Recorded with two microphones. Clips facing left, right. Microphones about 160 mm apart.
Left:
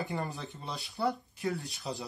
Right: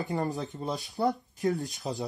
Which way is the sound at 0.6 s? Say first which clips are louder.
Right 4 dB; 40° right (ahead or behind).